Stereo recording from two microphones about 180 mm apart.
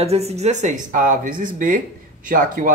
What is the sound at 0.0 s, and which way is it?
Speech, 35° right (ahead or behind).